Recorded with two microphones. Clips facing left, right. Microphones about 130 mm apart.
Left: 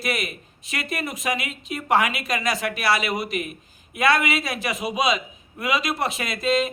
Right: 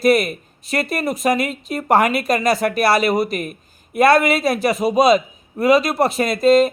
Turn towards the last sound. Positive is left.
turn(degrees=-40)  # may be behind; listen again after turning